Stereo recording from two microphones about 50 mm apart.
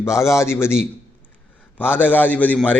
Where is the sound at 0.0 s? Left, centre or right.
Left.